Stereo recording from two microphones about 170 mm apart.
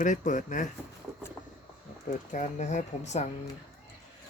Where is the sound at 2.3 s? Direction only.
45° left (ahead or behind).